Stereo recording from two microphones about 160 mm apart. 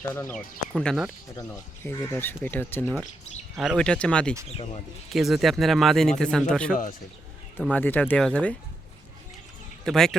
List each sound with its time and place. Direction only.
0.1 s speech: 15° left (ahead or behind)
0.8 s speech: 5° left (ahead or behind)
2.8 s speech: centre (ahead or behind)
4.5 s speech: 40° left (ahead or behind)
5.1 s speech: centre (ahead or behind)
9.8 s speech: 5° left (ahead or behind)